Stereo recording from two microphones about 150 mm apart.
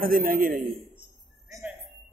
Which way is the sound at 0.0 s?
70° right (ahead or behind).